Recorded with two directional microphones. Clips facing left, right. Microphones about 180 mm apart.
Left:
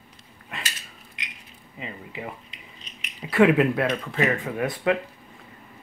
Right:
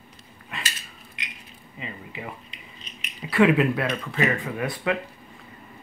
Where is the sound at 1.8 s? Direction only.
40° left (ahead or behind).